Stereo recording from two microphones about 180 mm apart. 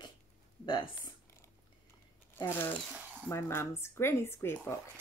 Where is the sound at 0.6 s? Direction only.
25° left (ahead or behind).